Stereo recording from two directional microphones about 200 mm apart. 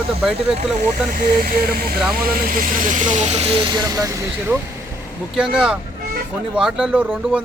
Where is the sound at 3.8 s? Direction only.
15° right (ahead or behind).